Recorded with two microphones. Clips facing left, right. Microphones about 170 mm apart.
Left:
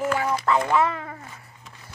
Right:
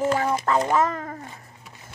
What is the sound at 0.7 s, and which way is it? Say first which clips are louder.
Speech: even; 40° right (ahead or behind).